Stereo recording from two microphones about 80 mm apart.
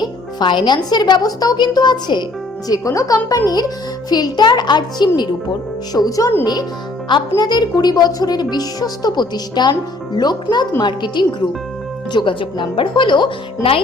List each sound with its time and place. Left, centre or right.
0.0 s a woman's voice: left
2.6 s a woman's voice: left
5.9 s speech: left
6.4 s a woman's voice: left
12.1 s speech: left